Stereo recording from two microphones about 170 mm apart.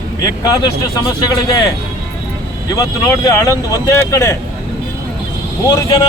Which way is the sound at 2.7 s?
20° left (ahead or behind).